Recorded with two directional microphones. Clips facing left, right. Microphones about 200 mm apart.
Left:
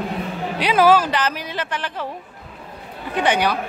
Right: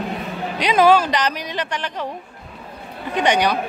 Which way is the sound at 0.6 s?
10° left (ahead or behind).